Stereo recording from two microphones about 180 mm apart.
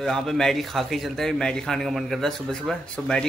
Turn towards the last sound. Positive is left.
turn(degrees=5)  # may be behind; listen again after turning